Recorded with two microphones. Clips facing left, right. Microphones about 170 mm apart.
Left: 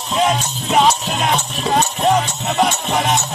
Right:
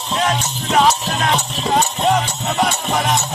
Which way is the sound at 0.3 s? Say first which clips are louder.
Left 1 dB; 15° left (ahead or behind).